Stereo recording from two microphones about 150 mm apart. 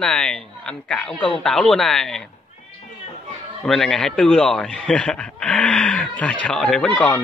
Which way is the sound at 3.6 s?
5° left (ahead or behind).